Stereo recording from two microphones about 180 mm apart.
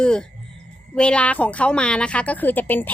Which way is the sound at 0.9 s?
5° left (ahead or behind).